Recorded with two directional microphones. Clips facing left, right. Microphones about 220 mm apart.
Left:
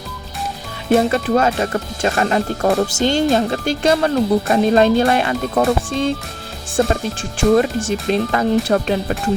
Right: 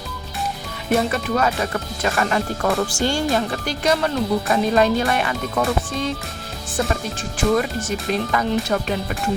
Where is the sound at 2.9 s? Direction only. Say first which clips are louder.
Left 5 dB; 20° left (ahead or behind).